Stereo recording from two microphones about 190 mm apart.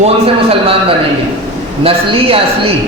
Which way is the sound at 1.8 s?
30° right (ahead or behind).